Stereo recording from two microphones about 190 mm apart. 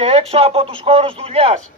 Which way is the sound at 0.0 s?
30° right (ahead or behind).